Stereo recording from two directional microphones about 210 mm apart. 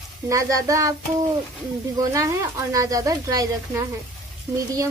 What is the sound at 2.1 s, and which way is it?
Speech, 15° right (ahead or behind).